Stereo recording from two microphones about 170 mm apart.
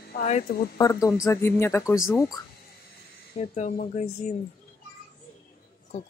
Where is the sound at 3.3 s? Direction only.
40° left (ahead or behind).